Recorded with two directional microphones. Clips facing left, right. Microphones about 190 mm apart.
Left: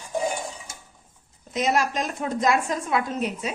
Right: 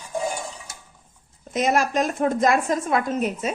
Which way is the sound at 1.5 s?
50° right (ahead or behind).